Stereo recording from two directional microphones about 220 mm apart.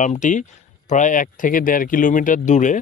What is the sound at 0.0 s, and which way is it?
Speech, 35° left (ahead or behind).